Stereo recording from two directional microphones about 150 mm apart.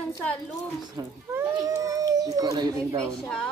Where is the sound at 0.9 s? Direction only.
20° right (ahead or behind).